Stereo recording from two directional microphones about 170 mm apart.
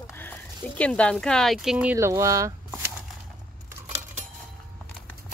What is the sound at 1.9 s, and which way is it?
Speech, 15° right (ahead or behind).